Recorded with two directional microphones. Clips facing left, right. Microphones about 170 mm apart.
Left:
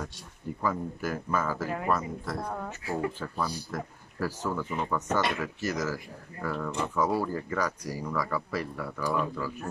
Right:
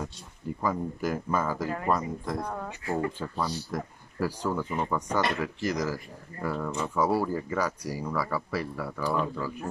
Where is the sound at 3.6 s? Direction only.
15° right (ahead or behind).